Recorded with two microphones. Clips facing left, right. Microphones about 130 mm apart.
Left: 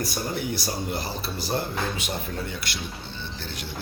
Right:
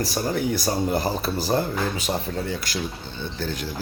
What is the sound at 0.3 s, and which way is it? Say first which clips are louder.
Speech: right 6 dB; 45° right (ahead or behind).